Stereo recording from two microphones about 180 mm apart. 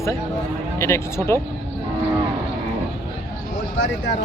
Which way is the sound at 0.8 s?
15° left (ahead or behind).